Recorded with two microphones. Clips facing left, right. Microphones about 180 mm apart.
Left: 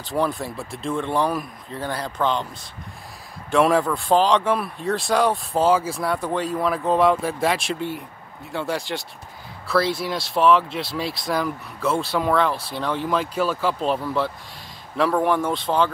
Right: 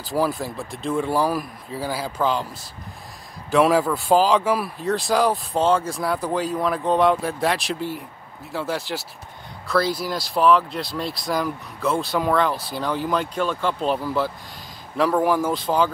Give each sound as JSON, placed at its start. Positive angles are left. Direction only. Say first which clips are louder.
{"t": 0.0, "sound": "speech", "louder": "right 1 dB", "side_deg": 0}
{"t": 3.4, "sound": "speech", "louder": "right 1 dB", "side_deg": 0}